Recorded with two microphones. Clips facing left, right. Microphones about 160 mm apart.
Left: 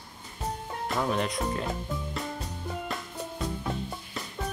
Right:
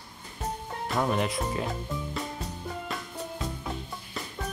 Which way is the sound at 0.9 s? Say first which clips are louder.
Right 1 dB; centre (ahead or behind).